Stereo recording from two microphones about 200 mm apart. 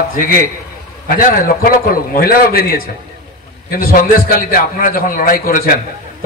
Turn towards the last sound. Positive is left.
turn(degrees=45)  # may be behind; listen again after turning